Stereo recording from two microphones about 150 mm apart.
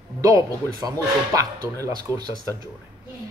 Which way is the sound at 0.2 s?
25° right (ahead or behind).